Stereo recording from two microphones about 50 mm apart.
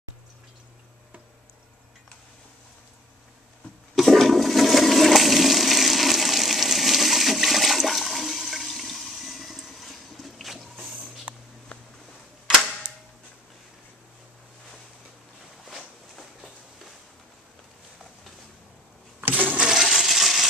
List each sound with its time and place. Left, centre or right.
3.9 s toilet flush: centre
15.6 s walk: centre
19.2 s a sound: right
19.6 s coin: centre